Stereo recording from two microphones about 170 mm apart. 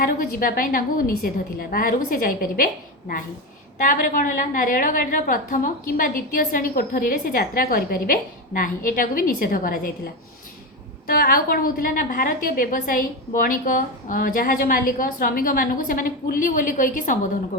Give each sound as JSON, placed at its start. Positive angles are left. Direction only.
{"t": 0.0, "sound": "a woman's voice", "side_deg": 55}
{"t": 3.8, "sound": "a woman's voice", "side_deg": 50}
{"t": 11.0, "sound": "a woman's voice", "side_deg": 60}